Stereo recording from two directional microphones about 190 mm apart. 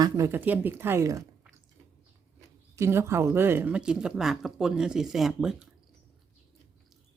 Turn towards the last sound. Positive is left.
turn(degrees=-5)  # may be behind; listen again after turning